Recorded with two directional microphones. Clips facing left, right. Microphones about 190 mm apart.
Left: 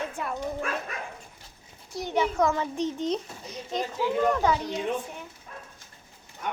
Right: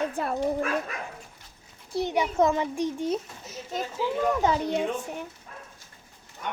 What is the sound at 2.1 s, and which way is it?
A child's voice, 20° right (ahead or behind).